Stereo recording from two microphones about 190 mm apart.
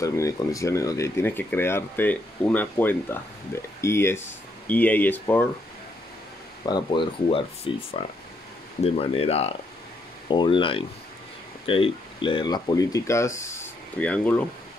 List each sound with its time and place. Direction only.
0.0 s speech: 15° left (ahead or behind)
6.6 s speech: 25° left (ahead or behind); by 14.4 s 10° left (ahead or behind)